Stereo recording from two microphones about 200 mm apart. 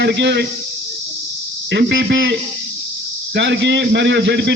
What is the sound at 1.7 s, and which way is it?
Speech, 60° right (ahead or behind).